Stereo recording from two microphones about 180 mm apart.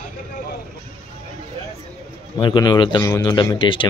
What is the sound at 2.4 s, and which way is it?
Speech, 25° left (ahead or behind).